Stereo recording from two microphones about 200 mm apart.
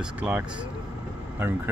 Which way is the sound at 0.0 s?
5° right (ahead or behind).